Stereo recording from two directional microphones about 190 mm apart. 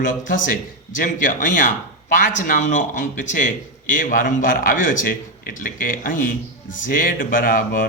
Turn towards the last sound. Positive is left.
turn(degrees=45)  # may be behind; listen again after turning